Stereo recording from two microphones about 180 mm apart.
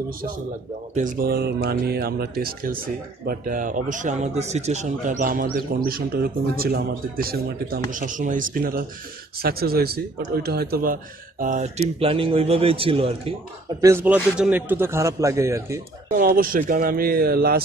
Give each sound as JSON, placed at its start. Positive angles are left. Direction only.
{"t": 0.9, "sound": "speech", "side_deg": -50}
{"t": 7.9, "sound": "speech", "side_deg": -45}
{"t": 12.0, "sound": "a man's voice", "side_deg": -30}
{"t": 13.7, "sound": "a man's voice", "side_deg": -15}
{"t": 16.1, "sound": "speech", "side_deg": -50}